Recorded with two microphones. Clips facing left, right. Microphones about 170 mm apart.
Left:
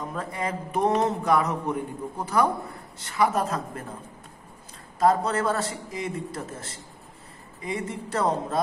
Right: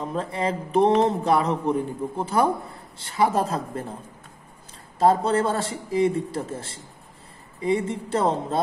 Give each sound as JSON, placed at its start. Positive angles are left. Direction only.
{"t": 0.0, "sound": "speech", "side_deg": -25}
{"t": 4.9, "sound": "speech", "side_deg": -30}